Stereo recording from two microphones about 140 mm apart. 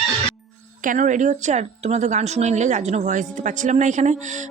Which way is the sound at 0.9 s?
65° right (ahead or behind).